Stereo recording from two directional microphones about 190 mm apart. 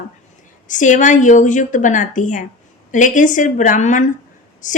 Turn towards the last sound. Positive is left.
turn(degrees=40)  # may be behind; listen again after turning